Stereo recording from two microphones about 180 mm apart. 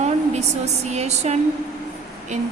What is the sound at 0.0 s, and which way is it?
A woman's voice, 40° right (ahead or behind).